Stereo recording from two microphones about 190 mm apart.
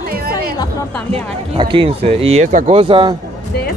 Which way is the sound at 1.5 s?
25° right (ahead or behind).